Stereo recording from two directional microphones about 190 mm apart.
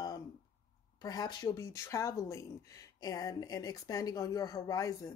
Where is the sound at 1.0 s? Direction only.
20° left (ahead or behind).